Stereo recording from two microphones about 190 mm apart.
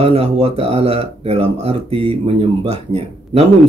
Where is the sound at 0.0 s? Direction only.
35° right (ahead or behind).